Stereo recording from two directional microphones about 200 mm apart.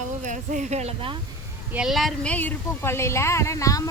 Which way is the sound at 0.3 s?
40° right (ahead or behind).